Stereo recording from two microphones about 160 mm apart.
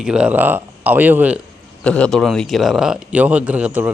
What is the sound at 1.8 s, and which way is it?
A man's voice, 5° left (ahead or behind).